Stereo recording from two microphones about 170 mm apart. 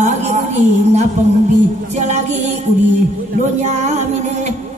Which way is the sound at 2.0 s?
45° right (ahead or behind).